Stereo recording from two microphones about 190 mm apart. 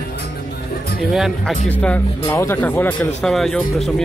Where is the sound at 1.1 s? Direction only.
Centre (ahead or behind).